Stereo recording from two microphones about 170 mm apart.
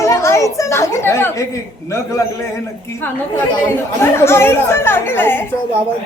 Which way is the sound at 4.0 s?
15° left (ahead or behind).